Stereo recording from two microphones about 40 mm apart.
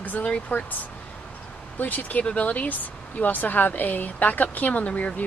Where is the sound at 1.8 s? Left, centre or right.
Left.